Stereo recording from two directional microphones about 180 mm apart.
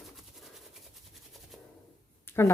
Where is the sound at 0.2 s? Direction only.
Centre (ahead or behind).